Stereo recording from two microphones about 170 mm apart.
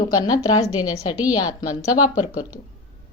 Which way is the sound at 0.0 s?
25° left (ahead or behind).